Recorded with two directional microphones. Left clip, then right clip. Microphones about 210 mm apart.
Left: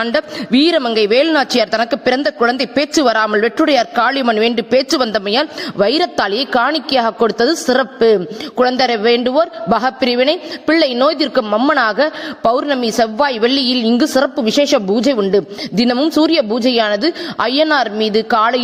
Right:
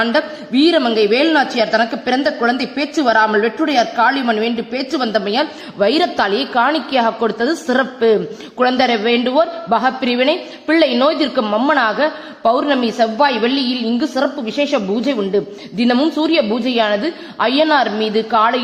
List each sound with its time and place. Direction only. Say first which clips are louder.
0.0 s a woman's voice: right 1 dB; 45° left (ahead or behind)